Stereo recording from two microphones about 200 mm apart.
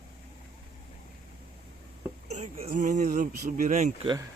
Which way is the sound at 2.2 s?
35° right (ahead or behind).